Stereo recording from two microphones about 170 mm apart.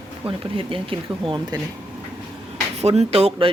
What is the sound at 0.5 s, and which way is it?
Speech, 30° right (ahead or behind).